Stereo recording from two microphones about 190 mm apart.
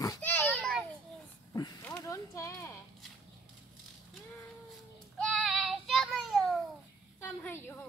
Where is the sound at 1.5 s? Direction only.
20° left (ahead or behind).